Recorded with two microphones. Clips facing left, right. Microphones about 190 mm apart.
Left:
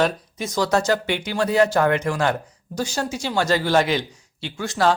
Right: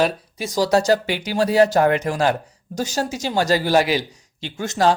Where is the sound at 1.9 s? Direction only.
20° right (ahead or behind).